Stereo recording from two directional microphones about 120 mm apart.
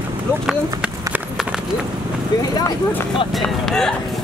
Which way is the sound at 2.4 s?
30° left (ahead or behind).